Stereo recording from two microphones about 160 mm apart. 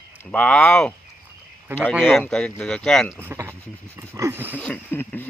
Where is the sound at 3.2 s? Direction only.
15° right (ahead or behind).